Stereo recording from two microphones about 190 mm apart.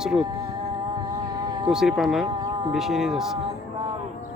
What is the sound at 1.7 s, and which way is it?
Speech, centre (ahead or behind).